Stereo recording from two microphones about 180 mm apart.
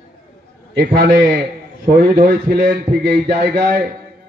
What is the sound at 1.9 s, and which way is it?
A man's voice, 55° right (ahead or behind).